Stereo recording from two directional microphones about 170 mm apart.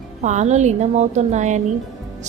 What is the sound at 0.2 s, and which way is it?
A woman's voice, 45° right (ahead or behind).